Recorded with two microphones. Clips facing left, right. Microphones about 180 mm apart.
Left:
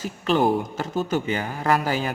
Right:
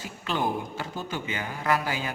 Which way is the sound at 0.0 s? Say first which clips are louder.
Left 8 dB; 45° left (ahead or behind).